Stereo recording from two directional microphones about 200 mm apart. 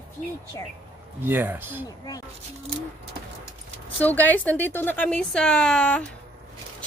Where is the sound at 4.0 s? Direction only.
10° left (ahead or behind).